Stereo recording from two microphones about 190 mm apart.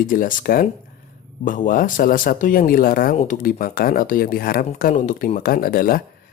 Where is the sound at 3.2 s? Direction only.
40° left (ahead or behind).